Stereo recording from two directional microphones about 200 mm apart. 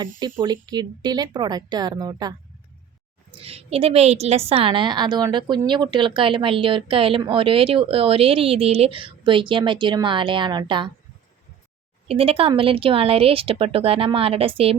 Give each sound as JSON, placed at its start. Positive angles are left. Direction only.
{"t": 0.2, "sound": "a woman's voice", "side_deg": -20}
{"t": 3.4, "sound": "a woman's voice", "side_deg": -30}
{"t": 12.0, "sound": "a woman's voice", "side_deg": -30}